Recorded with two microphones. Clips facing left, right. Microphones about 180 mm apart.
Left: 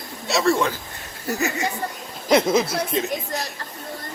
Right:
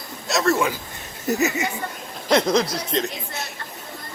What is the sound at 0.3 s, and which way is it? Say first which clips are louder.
Speech: left 1 dB; centre (ahead or behind).